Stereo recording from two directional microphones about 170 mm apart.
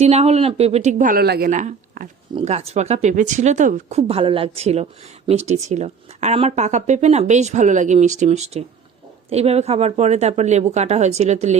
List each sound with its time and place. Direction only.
0.0 s a woman's voice: 40° right (ahead or behind)
2.3 s speech: 40° right (ahead or behind)